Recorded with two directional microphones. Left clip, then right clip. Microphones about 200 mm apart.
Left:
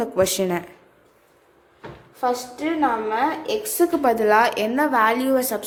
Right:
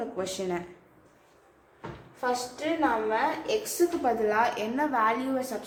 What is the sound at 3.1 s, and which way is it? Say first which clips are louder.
A woman's voice: left 5 dB; 50° left (ahead or behind).